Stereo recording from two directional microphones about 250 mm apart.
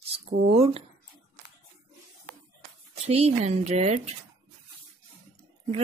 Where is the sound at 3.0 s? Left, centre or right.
Right.